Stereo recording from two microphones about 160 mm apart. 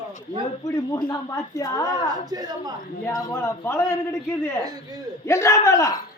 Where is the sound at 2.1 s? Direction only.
25° right (ahead or behind).